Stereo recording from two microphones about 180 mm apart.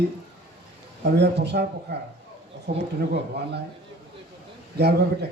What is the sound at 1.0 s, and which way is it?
Speech, 70° right (ahead or behind).